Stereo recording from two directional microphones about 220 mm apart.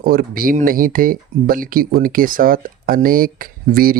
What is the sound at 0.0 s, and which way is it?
Speech, 40° right (ahead or behind).